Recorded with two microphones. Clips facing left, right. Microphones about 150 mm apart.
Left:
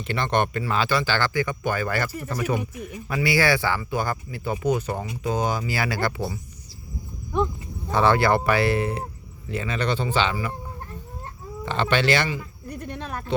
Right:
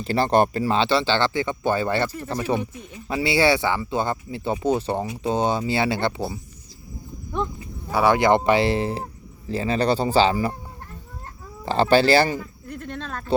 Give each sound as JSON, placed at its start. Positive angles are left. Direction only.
{"t": 0.0, "sound": "speech", "side_deg": -35}
{"t": 7.9, "sound": "speech", "side_deg": -10}
{"t": 11.6, "sound": "speech", "side_deg": -35}
{"t": 12.6, "sound": "a sound", "side_deg": 15}